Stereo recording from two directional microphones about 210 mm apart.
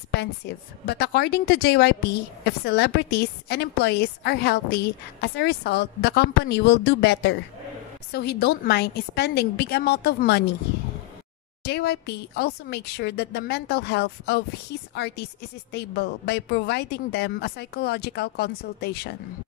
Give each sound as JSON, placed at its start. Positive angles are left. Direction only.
{"t": 0.8, "sound": "a woman's voice", "side_deg": 50}
{"t": 11.6, "sound": "a woman's voice", "side_deg": 50}